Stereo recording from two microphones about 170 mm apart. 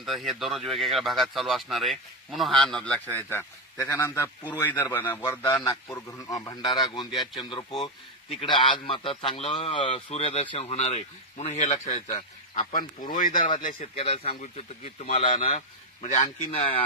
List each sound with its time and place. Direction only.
0.0 s a man's voice: centre (ahead or behind); by 13.4 s 50° left (ahead or behind)
13.7 s a man's voice: 40° left (ahead or behind)